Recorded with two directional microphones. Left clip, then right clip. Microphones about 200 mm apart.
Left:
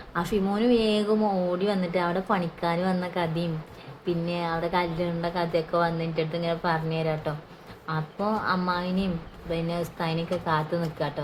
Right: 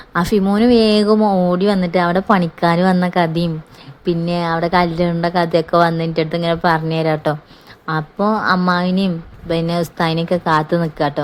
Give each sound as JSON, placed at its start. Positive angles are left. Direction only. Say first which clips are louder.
{"t": 0.1, "sound": "a woman's voice", "louder": "right 10 dB", "side_deg": -40}